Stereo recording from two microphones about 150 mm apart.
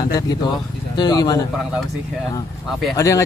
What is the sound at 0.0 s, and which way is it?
Speech, 25° left (ahead or behind).